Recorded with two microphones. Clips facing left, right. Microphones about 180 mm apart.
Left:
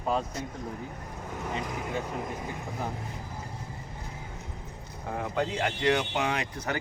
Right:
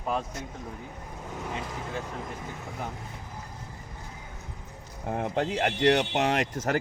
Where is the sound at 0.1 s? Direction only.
Centre (ahead or behind).